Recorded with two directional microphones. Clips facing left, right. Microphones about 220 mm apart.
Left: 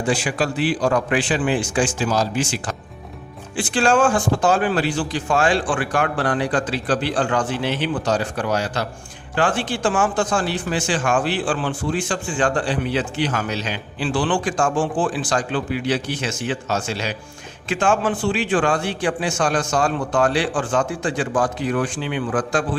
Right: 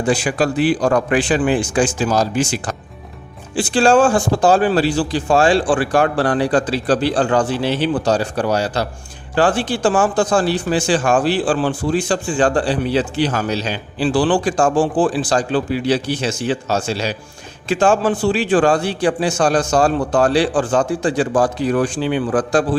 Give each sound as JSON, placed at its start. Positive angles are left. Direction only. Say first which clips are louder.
{"t": 0.1, "sound": "a man's voice", "louder": "right 5 dB", "side_deg": -45}
{"t": 3.5, "sound": "a man's voice", "louder": "right 5 dB", "side_deg": -30}